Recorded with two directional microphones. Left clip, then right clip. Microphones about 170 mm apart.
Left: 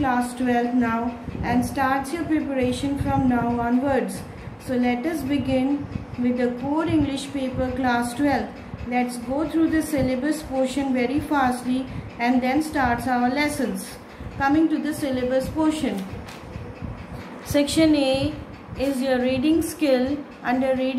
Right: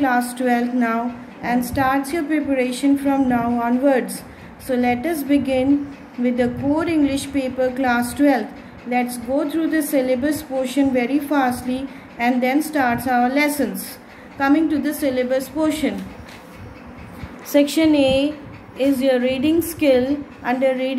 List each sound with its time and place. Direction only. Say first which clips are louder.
0.0 s a woman's voice: right 4 dB; 45° right (ahead or behind)
17.5 s a woman's voice: right 3 dB; 25° right (ahead or behind)